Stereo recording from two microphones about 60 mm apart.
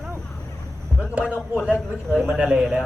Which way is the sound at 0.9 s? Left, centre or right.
Centre.